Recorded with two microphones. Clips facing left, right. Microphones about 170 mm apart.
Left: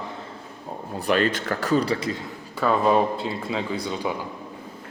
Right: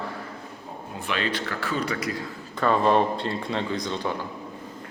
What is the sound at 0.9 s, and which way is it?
Speech, 40° left (ahead or behind).